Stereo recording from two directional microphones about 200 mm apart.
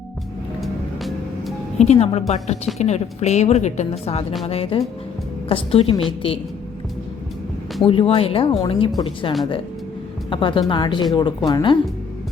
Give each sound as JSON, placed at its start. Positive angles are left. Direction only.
{"t": 0.6, "sound": "music", "side_deg": 0}
{"t": 1.8, "sound": "speech", "side_deg": 30}
{"t": 7.9, "sound": "speech", "side_deg": 25}